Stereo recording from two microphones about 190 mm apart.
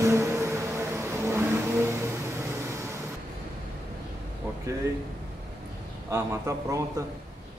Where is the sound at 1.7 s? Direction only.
15° right (ahead or behind).